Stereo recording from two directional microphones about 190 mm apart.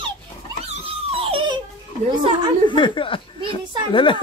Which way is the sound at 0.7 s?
30° right (ahead or behind).